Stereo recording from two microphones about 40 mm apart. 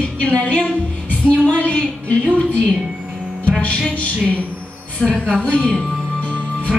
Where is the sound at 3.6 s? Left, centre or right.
Left.